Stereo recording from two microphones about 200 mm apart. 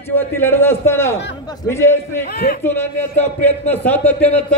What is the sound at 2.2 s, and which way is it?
Speech, 50° left (ahead or behind).